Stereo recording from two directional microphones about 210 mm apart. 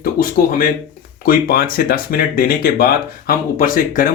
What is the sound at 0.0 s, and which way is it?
Speech, 40° left (ahead or behind).